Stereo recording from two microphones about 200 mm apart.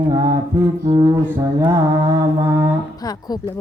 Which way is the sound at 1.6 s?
15° right (ahead or behind).